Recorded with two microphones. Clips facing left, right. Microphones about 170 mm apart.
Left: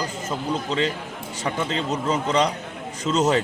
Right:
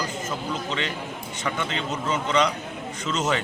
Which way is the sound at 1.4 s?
35° left (ahead or behind).